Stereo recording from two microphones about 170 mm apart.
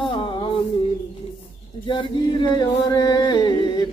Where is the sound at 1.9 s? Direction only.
25° left (ahead or behind).